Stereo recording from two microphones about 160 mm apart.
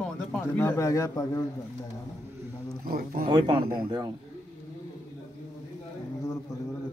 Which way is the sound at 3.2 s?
30° right (ahead or behind).